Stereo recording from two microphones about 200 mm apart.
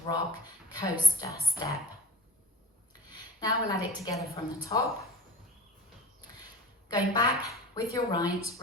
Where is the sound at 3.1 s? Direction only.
20° left (ahead or behind).